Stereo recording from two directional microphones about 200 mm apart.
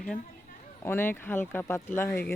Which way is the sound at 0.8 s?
10° left (ahead or behind).